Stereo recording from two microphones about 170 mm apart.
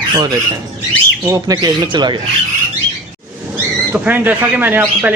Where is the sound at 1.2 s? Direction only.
20° right (ahead or behind).